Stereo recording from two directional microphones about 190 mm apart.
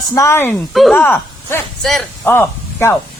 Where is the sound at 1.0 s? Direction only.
10° left (ahead or behind).